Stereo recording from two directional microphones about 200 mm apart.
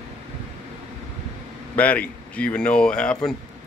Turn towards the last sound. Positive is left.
turn(degrees=5)  # may be behind; listen again after turning